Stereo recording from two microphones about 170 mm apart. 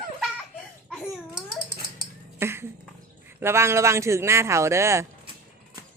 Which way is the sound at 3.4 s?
15° right (ahead or behind).